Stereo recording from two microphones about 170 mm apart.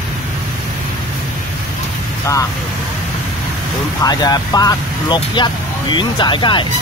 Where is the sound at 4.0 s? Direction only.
25° left (ahead or behind).